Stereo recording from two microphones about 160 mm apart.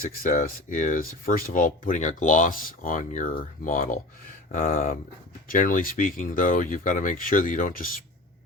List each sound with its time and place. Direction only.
0.1 s speech: 60° left (ahead or behind)